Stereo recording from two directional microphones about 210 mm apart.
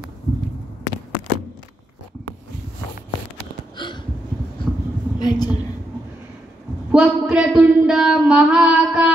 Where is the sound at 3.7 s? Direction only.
20° left (ahead or behind).